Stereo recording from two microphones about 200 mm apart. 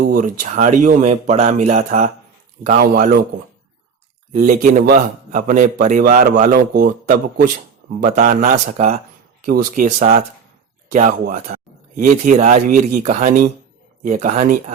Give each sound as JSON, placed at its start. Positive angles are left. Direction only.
{"t": 0.0, "sound": "a man's voice", "side_deg": -45}
{"t": 4.3, "sound": "a man's voice", "side_deg": -40}